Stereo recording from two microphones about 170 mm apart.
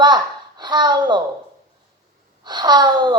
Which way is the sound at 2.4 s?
25° right (ahead or behind).